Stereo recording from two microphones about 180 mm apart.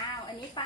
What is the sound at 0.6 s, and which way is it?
Speech, 25° left (ahead or behind).